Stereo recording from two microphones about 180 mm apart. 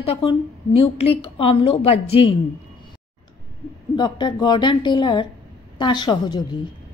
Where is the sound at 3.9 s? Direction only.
25° left (ahead or behind).